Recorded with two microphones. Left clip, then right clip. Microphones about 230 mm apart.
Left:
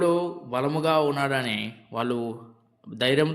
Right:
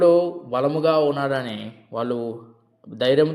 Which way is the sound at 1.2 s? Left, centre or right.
Left.